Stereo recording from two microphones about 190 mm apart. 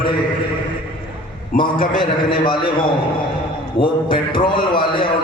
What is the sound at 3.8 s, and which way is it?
A man's voice, 25° left (ahead or behind).